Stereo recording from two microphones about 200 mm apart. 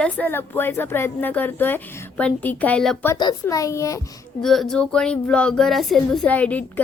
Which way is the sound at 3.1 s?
15° left (ahead or behind).